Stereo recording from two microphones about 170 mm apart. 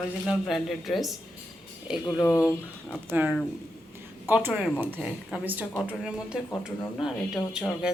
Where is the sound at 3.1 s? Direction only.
5° right (ahead or behind).